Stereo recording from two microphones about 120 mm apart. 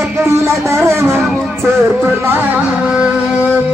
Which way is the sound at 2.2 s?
15° right (ahead or behind).